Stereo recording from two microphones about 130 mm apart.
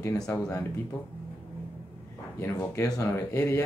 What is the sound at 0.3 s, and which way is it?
Speech, 20° left (ahead or behind).